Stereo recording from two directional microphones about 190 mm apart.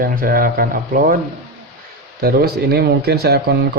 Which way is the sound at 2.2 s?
55° right (ahead or behind).